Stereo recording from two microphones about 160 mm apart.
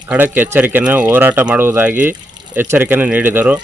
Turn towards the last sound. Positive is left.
turn(degrees=-10)  # may be behind; listen again after turning